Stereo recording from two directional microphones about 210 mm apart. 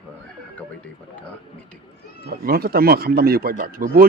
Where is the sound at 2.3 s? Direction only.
45° right (ahead or behind).